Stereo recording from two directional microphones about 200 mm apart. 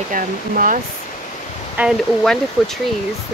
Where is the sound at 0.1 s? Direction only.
40° right (ahead or behind).